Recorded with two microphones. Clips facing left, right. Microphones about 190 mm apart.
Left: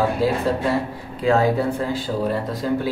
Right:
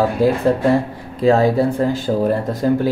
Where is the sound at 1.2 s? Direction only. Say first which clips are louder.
Right 4 dB; 35° right (ahead or behind).